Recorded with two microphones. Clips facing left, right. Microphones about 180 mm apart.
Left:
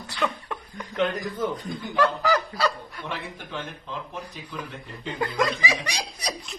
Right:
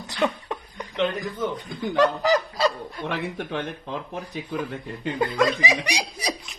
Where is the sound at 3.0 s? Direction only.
65° right (ahead or behind).